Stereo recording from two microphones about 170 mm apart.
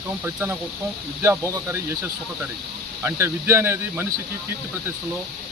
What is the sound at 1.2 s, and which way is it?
Speech, 15° right (ahead or behind).